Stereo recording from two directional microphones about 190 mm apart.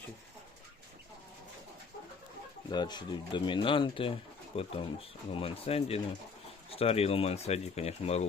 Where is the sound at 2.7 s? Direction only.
25° left (ahead or behind).